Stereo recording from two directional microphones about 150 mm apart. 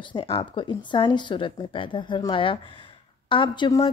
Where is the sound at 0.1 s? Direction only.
35° left (ahead or behind).